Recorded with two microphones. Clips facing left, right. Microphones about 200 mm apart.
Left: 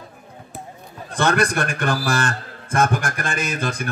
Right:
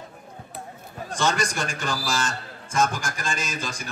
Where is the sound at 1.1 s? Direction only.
60° left (ahead or behind).